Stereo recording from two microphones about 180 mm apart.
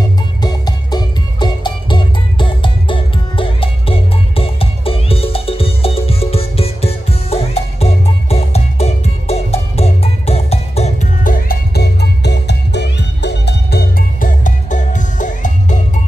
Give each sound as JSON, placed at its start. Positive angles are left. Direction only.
{"t": 0.4, "sound": "music", "side_deg": 25}